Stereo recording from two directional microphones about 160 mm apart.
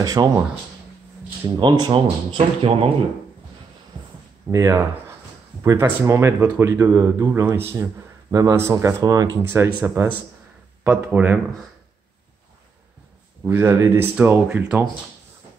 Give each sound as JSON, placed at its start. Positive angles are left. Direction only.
{"t": 0.0, "sound": "speech", "side_deg": -20}
{"t": 1.6, "sound": "speech", "side_deg": -30}
{"t": 4.5, "sound": "speech", "side_deg": -20}
{"t": 9.5, "sound": "speech", "side_deg": -10}
{"t": 13.5, "sound": "speech", "side_deg": -15}